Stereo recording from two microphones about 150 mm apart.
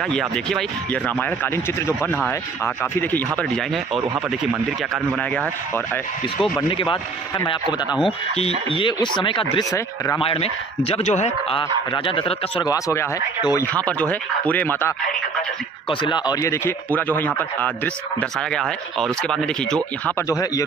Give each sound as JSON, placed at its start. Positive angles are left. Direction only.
{"t": 0.0, "sound": "speech", "side_deg": 5}
{"t": 6.7, "sound": "a man's voice", "side_deg": 35}
{"t": 12.6, "sound": "speech", "side_deg": 20}
{"t": 13.8, "sound": "speech", "side_deg": 10}
{"t": 15.9, "sound": "speech", "side_deg": 35}
{"t": 20.2, "sound": "speech", "side_deg": 20}